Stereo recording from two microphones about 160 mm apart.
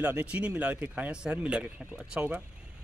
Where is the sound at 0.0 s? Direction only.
10° right (ahead or behind).